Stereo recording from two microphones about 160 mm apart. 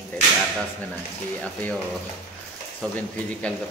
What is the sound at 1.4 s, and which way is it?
Speech, 10° left (ahead or behind).